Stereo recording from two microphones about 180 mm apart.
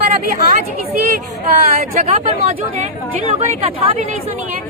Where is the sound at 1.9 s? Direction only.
35° right (ahead or behind).